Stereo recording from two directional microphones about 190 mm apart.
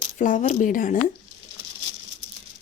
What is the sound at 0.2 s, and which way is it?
Speech, 40° left (ahead or behind).